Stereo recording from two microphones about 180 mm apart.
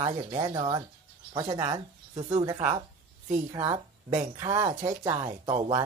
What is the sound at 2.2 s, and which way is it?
Speech, 35° right (ahead or behind).